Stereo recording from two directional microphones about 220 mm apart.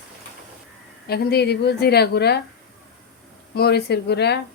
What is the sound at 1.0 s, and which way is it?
Speech, 45° left (ahead or behind).